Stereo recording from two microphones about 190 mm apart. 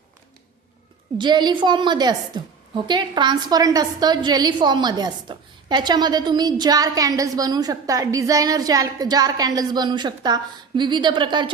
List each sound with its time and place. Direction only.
1.2 s a woman's voice: 25° right (ahead or behind)